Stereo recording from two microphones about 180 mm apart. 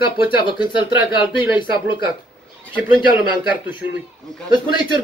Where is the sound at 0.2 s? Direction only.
25° left (ahead or behind).